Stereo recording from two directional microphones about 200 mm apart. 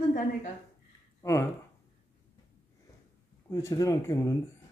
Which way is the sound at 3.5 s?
15° left (ahead or behind).